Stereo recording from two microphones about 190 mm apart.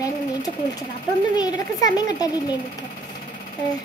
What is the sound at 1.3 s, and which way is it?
Speech, 20° left (ahead or behind).